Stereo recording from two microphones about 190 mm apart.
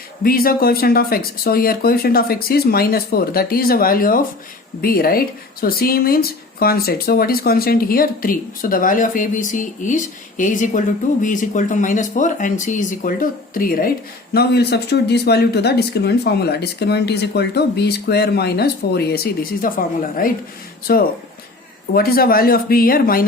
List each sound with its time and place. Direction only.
0.2 s a woman's voice: 50° left (ahead or behind)